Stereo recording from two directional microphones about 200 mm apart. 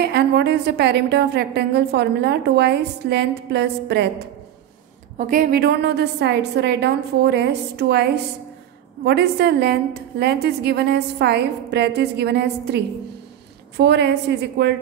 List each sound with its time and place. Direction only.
0.0 s a woman's voice: 55° right (ahead or behind)
5.1 s a woman's voice: 40° right (ahead or behind); by 14.7 s 55° right (ahead or behind)